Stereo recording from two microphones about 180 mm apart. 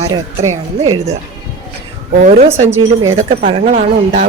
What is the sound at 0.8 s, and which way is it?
Speech, 35° right (ahead or behind).